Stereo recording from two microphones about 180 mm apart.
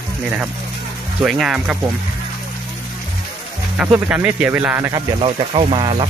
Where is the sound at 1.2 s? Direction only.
Centre (ahead or behind).